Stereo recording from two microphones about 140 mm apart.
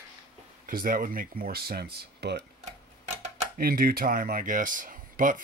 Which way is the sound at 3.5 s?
90° right.